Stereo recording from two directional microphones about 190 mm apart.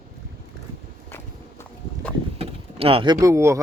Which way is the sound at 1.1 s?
10° left (ahead or behind).